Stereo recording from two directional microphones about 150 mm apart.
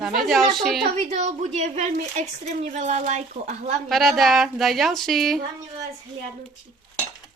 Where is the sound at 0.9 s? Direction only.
45° right (ahead or behind).